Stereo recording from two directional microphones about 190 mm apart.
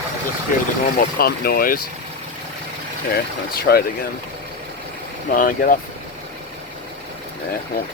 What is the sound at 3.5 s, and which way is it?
Speech, 55° left (ahead or behind).